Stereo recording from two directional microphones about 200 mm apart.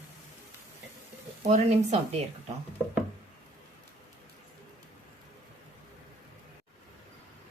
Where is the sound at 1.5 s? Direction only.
30° right (ahead or behind).